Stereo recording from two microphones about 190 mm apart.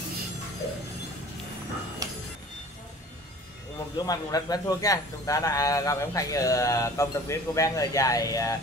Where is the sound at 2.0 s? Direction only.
20° right (ahead or behind).